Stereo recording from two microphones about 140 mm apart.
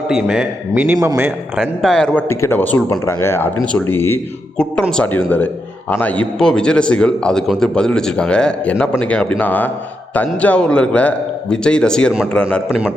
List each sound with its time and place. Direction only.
0.1 s a man's voice: 5° right (ahead or behind)
0.7 s a man's voice: 15° right (ahead or behind)
1.8 s a man's voice: 5° left (ahead or behind)
4.5 s a man's voice: 5° left (ahead or behind)